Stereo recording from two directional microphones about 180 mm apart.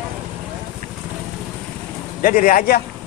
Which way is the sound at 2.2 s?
50° left (ahead or behind).